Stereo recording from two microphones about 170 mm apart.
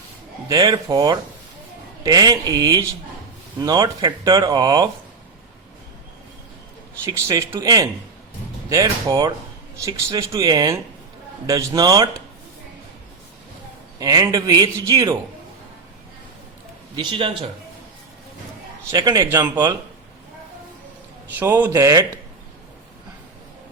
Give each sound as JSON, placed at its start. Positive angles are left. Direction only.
{"t": 0.4, "sound": "speech", "side_deg": -25}
{"t": 7.0, "sound": "speech", "side_deg": -15}
{"t": 14.0, "sound": "speech", "side_deg": -20}
{"t": 16.9, "sound": "speech", "side_deg": -30}
{"t": 18.9, "sound": "speech", "side_deg": -20}
{"t": 21.3, "sound": "speech", "side_deg": -10}